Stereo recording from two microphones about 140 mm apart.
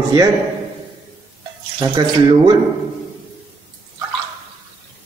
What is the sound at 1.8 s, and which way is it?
Speech, 35° right (ahead or behind).